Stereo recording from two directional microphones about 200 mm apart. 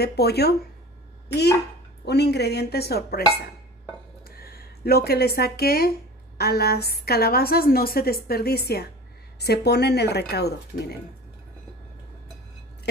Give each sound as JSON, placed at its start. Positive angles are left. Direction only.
{"t": 0.0, "sound": "speech", "side_deg": 55}
{"t": 2.0, "sound": "speech", "side_deg": 55}
{"t": 4.4, "sound": "speech", "side_deg": 50}